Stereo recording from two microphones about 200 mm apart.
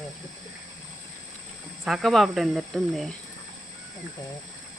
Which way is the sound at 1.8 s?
Centre (ahead or behind).